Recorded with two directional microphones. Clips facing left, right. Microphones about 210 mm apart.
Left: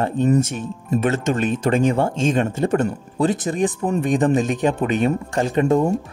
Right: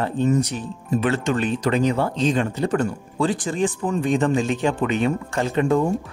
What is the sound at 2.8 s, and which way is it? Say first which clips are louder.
Speech: left 2 dB; 20° left (ahead or behind).